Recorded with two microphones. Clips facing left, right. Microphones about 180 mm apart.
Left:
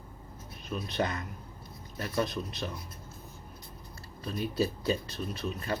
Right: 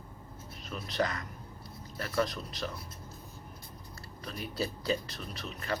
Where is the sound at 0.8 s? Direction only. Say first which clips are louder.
Even; 25° left (ahead or behind).